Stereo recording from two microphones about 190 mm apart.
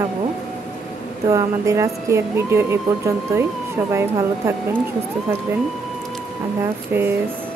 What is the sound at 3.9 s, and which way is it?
Speech, 15° right (ahead or behind).